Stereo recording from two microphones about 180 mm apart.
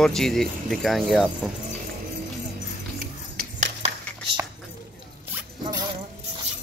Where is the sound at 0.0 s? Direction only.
Centre (ahead or behind).